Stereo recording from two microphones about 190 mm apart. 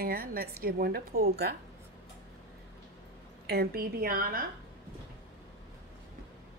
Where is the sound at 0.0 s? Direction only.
50° right (ahead or behind).